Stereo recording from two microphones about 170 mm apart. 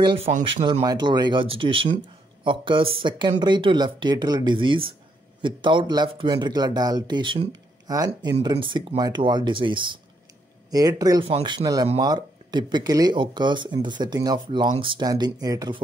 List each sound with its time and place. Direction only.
0.0 s speech: 30° right (ahead or behind)